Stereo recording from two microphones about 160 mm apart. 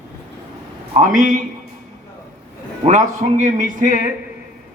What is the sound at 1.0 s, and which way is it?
Speech, 50° right (ahead or behind).